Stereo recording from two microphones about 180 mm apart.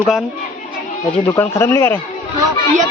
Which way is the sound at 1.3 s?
15° left (ahead or behind).